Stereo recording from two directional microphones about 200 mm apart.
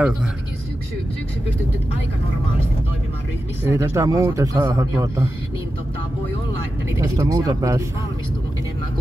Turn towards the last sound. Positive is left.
turn(degrees=-15)  # may be behind; listen again after turning